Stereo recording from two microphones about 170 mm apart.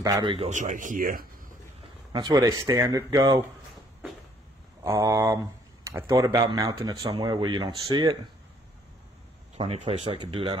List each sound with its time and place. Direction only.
0.0 s speech: 25° right (ahead or behind)
0.5 s speech: 50° right (ahead or behind)
2.1 s speech: 25° right (ahead or behind)
4.8 s speech: 15° right (ahead or behind)
9.6 s speech: 35° right (ahead or behind)